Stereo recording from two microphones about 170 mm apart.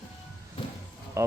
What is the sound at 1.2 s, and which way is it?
Speech, 15° right (ahead or behind).